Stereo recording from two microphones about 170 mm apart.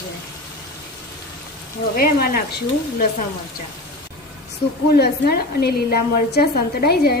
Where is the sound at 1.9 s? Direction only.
60° left (ahead or behind).